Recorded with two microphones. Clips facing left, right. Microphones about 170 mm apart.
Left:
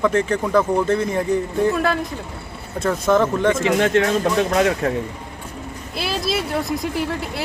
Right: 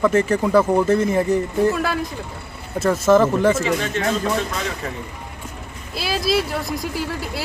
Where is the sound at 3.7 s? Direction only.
55° left (ahead or behind).